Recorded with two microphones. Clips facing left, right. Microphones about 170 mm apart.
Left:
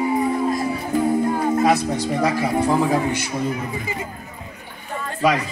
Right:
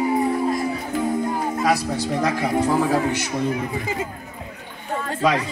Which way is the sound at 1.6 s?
25° left (ahead or behind).